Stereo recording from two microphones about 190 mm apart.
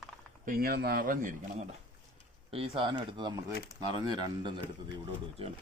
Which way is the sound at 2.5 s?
25° right (ahead or behind).